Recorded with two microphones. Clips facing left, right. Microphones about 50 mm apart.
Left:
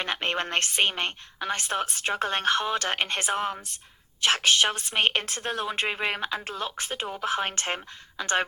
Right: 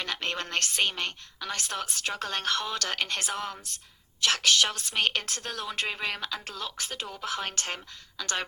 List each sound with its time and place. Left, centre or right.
0.0 s a woman's voice: left